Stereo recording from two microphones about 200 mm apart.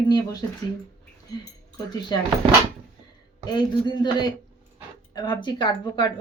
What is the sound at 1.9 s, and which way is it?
Speech, 20° left (ahead or behind).